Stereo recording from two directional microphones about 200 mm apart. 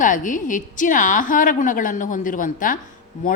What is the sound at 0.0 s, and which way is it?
A woman's voice, 40° left (ahead or behind).